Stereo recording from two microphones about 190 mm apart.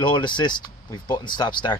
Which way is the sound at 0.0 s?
25° left (ahead or behind).